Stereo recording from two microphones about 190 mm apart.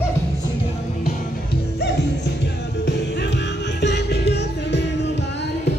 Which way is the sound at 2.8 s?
65° left (ahead or behind).